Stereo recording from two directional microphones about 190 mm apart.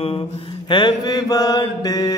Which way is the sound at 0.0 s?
30° left (ahead or behind).